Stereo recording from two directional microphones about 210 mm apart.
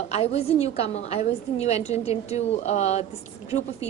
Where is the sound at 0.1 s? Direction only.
30° left (ahead or behind).